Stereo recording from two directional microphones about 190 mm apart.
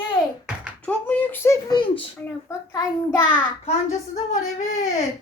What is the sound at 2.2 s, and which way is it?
Speech, 15° left (ahead or behind).